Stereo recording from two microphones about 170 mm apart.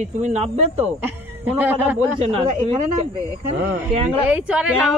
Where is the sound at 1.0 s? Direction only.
10° right (ahead or behind).